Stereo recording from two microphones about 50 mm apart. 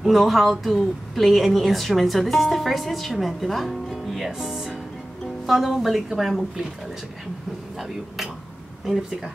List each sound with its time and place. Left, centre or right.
0.0 s a woman's voice: centre
7.7 s a woman's voice: centre